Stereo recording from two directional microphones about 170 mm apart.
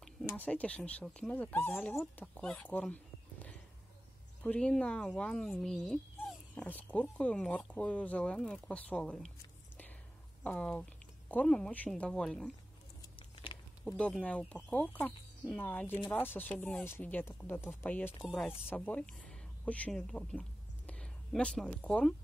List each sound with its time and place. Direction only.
0.3 s speech: 10° left (ahead or behind)
10.4 s speech: 5° left (ahead or behind)
13.5 s a sound: 30° left (ahead or behind)
13.8 s speech: 5° left (ahead or behind)